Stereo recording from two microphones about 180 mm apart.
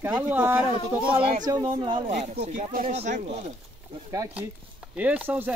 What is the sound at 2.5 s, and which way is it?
Speech, 45° right (ahead or behind).